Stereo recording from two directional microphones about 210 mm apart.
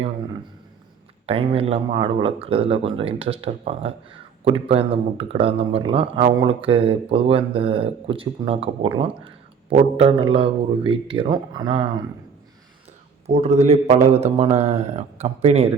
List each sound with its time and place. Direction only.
1.3 s speech: 25° right (ahead or behind)
13.2 s speech: 30° right (ahead or behind)